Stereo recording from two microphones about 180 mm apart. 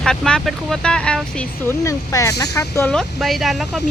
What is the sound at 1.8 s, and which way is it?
A woman's voice, 20° left (ahead or behind).